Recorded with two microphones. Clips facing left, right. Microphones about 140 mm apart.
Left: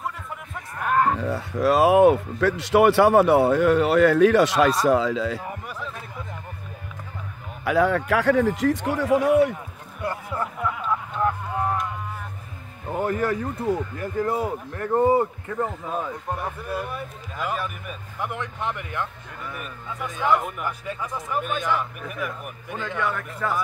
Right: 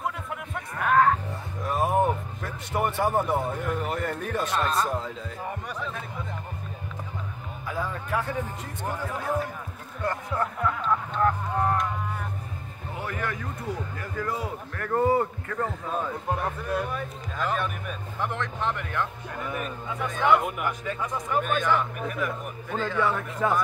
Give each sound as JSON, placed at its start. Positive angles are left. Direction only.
{"t": 0.7, "sound": "a sound", "side_deg": 5}
{"t": 1.2, "sound": "speech", "side_deg": 80}
{"t": 5.5, "sound": "speech", "side_deg": 5}
{"t": 7.6, "sound": "a man's voice", "side_deg": 80}
{"t": 10.0, "sound": "a sound", "side_deg": 5}
{"t": 12.9, "sound": "a man's voice", "side_deg": 45}
{"t": 15.6, "sound": "speech", "side_deg": 5}
{"t": 19.9, "sound": "speech", "side_deg": 0}
{"t": 23.0, "sound": "speech", "side_deg": -20}